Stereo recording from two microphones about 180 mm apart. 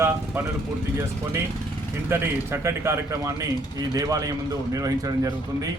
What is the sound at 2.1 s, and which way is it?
A man's voice, 15° right (ahead or behind).